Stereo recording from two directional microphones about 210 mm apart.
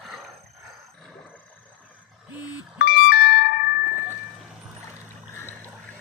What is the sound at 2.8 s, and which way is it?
Music, 45° left (ahead or behind).